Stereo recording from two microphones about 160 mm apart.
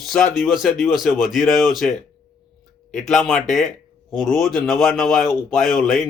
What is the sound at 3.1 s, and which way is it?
Speech, 5° left (ahead or behind).